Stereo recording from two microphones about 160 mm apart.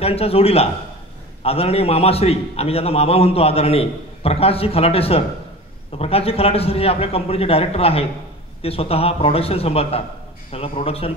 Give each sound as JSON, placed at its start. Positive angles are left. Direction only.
{"t": 0.0, "sound": "a man's voice", "side_deg": 40}